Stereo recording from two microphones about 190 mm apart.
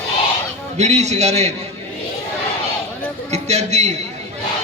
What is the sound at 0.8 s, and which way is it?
Speech, 35° right (ahead or behind).